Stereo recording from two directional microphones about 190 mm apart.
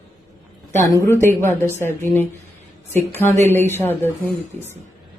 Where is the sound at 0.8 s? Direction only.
15° left (ahead or behind).